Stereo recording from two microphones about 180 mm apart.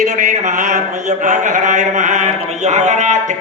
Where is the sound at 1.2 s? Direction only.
45° right (ahead or behind).